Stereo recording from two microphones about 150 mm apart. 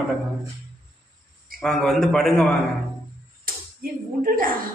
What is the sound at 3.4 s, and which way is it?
Slap, 70° right (ahead or behind).